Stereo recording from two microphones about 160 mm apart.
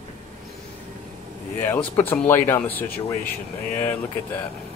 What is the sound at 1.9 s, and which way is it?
Speech, 10° left (ahead or behind).